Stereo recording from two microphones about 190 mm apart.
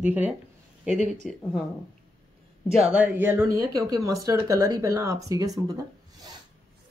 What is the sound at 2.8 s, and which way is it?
Speech, 5° right (ahead or behind).